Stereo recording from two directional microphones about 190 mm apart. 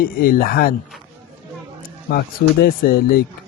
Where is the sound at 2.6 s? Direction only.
50° left (ahead or behind).